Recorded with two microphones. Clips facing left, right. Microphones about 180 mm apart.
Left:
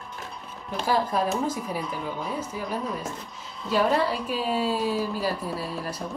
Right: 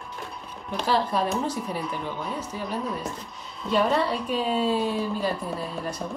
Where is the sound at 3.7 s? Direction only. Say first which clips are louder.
Even; 5° left (ahead or behind).